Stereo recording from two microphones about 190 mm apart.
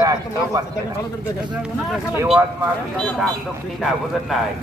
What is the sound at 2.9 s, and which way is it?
Speech, 5° left (ahead or behind).